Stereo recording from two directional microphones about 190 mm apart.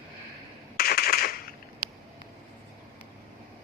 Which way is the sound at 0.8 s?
50° left (ahead or behind).